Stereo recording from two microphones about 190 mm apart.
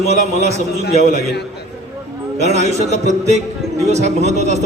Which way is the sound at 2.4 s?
35° right (ahead or behind).